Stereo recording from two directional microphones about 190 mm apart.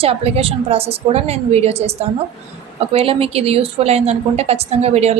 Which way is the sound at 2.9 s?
30° right (ahead or behind).